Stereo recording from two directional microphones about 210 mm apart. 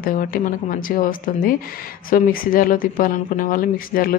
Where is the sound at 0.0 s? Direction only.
40° left (ahead or behind).